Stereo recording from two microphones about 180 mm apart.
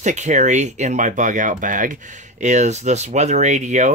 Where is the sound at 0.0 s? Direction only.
40° right (ahead or behind).